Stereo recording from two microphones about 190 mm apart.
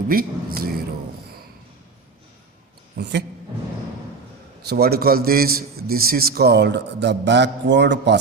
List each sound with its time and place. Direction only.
0.1 s speech: 50° right (ahead or behind)
3.0 s a man's voice: 65° right (ahead or behind)
4.7 s a man's voice: 55° right (ahead or behind)